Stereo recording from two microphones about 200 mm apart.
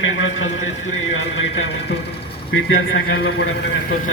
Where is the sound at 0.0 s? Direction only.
75° left (ahead or behind).